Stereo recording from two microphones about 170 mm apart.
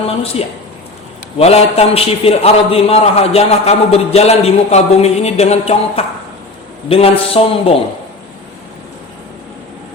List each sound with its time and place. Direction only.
1.4 s a man's voice: 35° left (ahead or behind)